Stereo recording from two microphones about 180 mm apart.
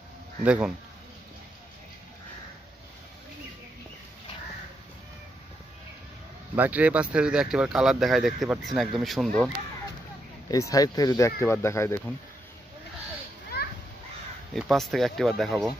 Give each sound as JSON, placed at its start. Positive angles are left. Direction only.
{"t": 0.4, "sound": "speech", "side_deg": -5}
{"t": 6.5, "sound": "speech", "side_deg": -10}
{"t": 10.5, "sound": "speech", "side_deg": 20}
{"t": 14.5, "sound": "speech", "side_deg": 0}